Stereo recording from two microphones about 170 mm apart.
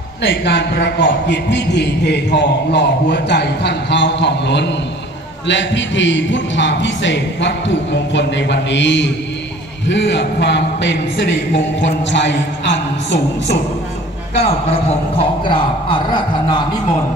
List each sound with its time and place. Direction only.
0.2 s a man's voice: 90° left
14.4 s a man's voice: 35° left (ahead or behind)